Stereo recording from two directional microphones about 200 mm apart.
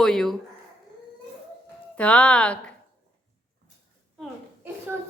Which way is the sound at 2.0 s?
5° left (ahead or behind).